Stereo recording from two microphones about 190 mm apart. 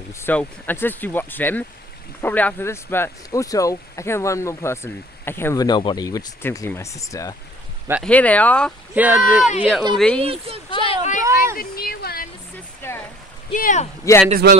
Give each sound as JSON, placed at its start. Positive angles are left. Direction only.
{"t": 0.2, "sound": "speech", "side_deg": 10}
{"t": 8.9, "sound": "speech", "side_deg": -10}
{"t": 10.2, "sound": "speech", "side_deg": -30}
{"t": 10.7, "sound": "a sound", "side_deg": 30}
{"t": 11.5, "sound": "a sound", "side_deg": 55}
{"t": 12.8, "sound": "a sound", "side_deg": 10}
{"t": 13.5, "sound": "speech", "side_deg": 40}
{"t": 14.1, "sound": "speech", "side_deg": 15}
{"t": 14.4, "sound": "speech", "side_deg": -55}